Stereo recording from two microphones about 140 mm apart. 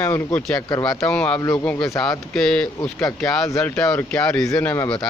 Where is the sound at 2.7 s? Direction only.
25° left (ahead or behind).